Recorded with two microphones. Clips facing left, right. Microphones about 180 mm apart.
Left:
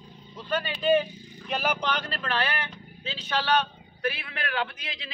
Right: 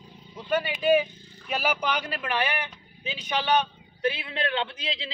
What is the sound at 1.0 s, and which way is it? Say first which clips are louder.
Vehicle: left 6 dB; 15° left (ahead or behind).